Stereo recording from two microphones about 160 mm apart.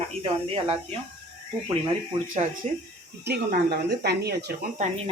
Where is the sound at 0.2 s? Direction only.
35° right (ahead or behind).